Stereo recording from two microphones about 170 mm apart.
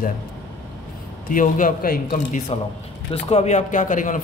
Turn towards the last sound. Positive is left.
turn(degrees=50)  # may be behind; listen again after turning